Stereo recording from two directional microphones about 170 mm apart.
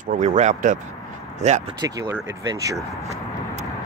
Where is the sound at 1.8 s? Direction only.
20° right (ahead or behind).